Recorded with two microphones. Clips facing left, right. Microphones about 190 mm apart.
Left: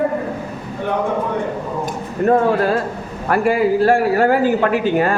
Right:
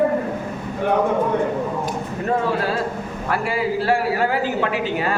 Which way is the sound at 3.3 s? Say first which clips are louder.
Left 7 dB; 50° left (ahead or behind).